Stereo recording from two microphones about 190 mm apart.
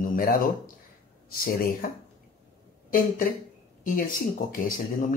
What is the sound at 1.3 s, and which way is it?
Speech, 50° left (ahead or behind).